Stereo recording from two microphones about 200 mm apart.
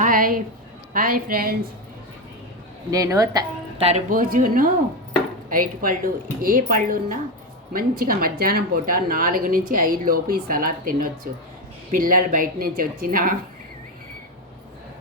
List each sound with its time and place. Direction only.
0.0 s a woman's voice: 45° right (ahead or behind)
2.9 s a woman's voice: 15° right (ahead or behind)
3.8 s a woman's voice: 30° right (ahead or behind)